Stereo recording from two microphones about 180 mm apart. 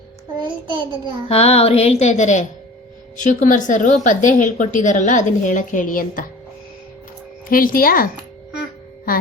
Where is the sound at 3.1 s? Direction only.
45° left (ahead or behind).